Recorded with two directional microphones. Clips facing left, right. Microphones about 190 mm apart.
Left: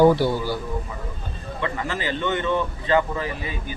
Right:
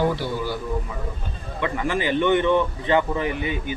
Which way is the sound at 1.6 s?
15° right (ahead or behind).